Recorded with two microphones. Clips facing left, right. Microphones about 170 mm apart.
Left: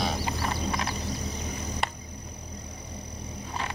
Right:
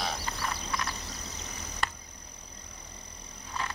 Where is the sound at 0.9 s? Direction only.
Centre (ahead or behind).